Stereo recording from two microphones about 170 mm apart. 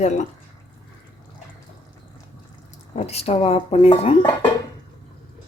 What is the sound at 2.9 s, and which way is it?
Speech, 40° left (ahead or behind).